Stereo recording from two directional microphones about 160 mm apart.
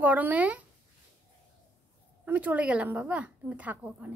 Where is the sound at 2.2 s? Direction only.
10° right (ahead or behind).